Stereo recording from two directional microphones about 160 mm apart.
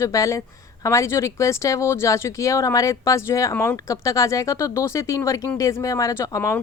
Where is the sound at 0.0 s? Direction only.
20° left (ahead or behind).